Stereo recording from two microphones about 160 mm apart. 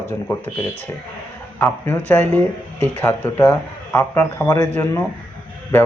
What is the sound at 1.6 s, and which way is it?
Speech, 10° left (ahead or behind).